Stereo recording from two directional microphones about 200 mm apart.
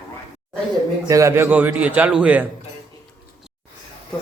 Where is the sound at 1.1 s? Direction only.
15° right (ahead or behind).